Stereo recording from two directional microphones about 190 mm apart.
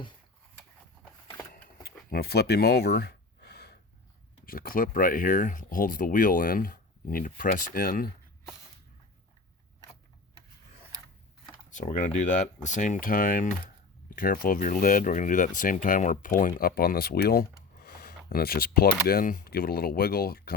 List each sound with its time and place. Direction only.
1.8 s gasp: 55° left (ahead or behind)
4.4 s speech: 50° left (ahead or behind)
11.7 s speech: 40° left (ahead or behind)